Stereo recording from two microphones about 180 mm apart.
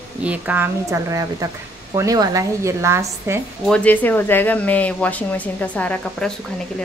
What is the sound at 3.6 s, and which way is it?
Speech, 5° left (ahead or behind).